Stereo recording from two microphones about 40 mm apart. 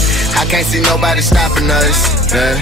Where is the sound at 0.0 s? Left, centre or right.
Centre.